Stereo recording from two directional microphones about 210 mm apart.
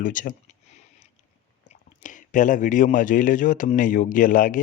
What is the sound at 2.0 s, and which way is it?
Speech, 35° left (ahead or behind).